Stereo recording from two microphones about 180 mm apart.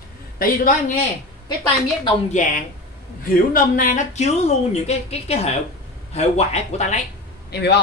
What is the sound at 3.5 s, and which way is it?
A woman's voice, 50° left (ahead or behind).